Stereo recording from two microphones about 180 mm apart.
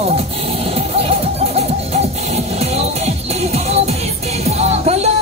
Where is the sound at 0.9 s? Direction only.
35° right (ahead or behind).